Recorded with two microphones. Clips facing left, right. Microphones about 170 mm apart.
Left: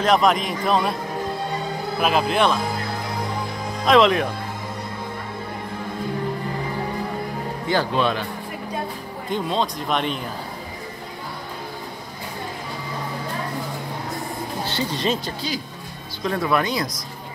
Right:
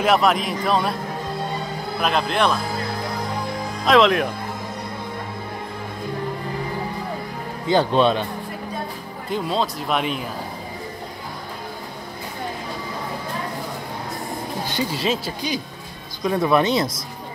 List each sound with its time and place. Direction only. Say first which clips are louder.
0.0 s speech: even; 5° right (ahead or behind)
2.0 s speech: left 1 dB; 5° left (ahead or behind)
3.8 s speech: even; centre (ahead or behind)
7.6 s speech: right 4 dB; 25° right (ahead or behind)
9.3 s speech: even; centre (ahead or behind)
14.7 s speech: right 1 dB; 10° right (ahead or behind)
16.3 s speech: right 4 dB; 20° right (ahead or behind)